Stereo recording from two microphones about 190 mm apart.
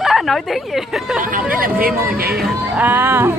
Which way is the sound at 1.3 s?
50° right (ahead or behind).